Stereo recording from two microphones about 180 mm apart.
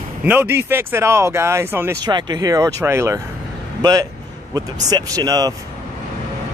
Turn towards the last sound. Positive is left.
turn(degrees=-20)  # may be behind; listen again after turning